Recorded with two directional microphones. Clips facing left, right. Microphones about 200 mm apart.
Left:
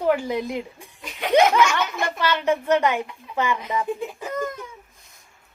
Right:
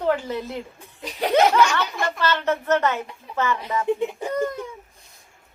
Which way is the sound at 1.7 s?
35° right (ahead or behind).